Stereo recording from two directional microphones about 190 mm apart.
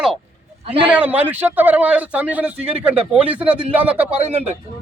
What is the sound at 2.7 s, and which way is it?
Speech, 30° right (ahead or behind).